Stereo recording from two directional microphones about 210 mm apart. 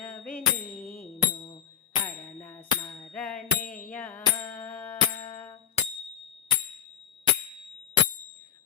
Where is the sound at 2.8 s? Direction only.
25° left (ahead or behind).